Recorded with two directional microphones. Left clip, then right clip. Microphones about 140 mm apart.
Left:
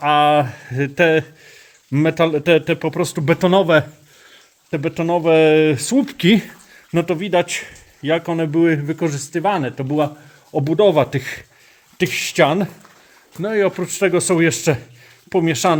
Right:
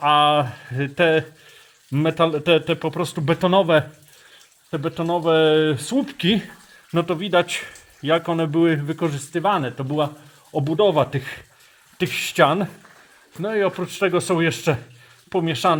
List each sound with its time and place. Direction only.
0.0 s speech: 30° left (ahead or behind); by 6.5 s 50° left (ahead or behind)
6.9 s speech: 30° left (ahead or behind)
10.5 s speech: 45° left (ahead or behind)
11.9 s speech: 30° left (ahead or behind)